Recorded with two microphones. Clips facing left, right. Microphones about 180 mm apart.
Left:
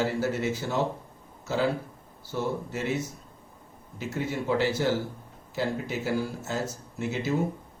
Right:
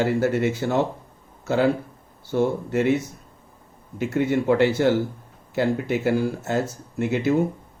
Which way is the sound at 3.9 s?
60° right (ahead or behind).